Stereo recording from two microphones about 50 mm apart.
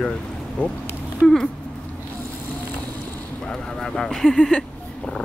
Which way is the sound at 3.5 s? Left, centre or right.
Centre.